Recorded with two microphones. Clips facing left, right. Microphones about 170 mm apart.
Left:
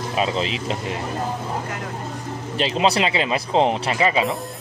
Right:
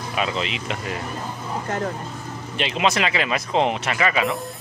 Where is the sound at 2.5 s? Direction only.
35° left (ahead or behind).